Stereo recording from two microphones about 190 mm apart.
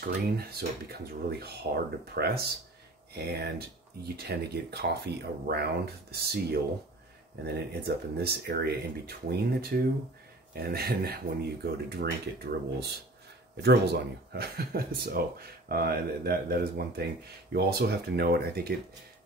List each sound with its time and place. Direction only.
0.0 s speech: 55° right (ahead or behind)
13.6 s speech: 60° right (ahead or behind)